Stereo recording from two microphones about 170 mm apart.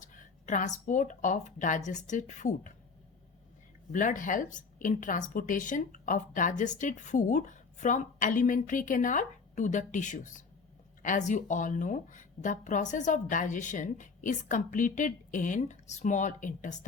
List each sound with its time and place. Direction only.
0.0 s a woman's voice: 50° left (ahead or behind)
3.9 s a woman's voice: 50° left (ahead or behind)